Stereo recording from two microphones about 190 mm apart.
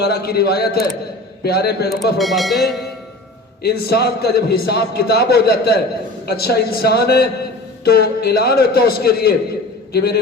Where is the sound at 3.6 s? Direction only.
55° left (ahead or behind).